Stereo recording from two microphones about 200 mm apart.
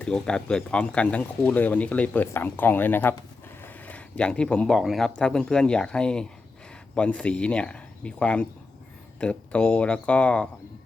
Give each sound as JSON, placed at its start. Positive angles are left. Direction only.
{"t": 0.0, "sound": "speech", "side_deg": 5}